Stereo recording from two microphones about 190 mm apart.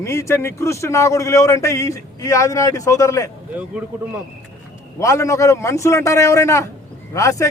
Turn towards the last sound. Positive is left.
turn(degrees=15)  # may be behind; listen again after turning